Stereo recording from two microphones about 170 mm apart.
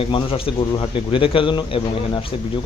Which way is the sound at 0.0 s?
30° left (ahead or behind).